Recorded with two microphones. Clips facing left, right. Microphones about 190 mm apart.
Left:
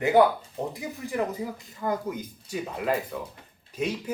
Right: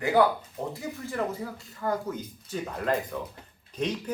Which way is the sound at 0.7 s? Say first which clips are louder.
Left 2 dB; 15° left (ahead or behind).